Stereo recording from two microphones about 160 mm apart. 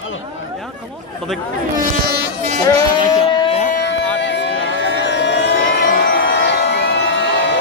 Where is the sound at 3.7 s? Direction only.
80° left.